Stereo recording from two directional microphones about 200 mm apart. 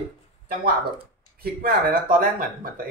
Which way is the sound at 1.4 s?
45° right (ahead or behind).